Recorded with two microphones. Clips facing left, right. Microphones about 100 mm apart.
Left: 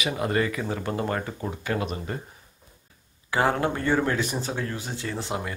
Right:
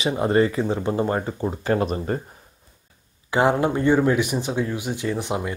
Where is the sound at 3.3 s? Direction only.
20° right (ahead or behind).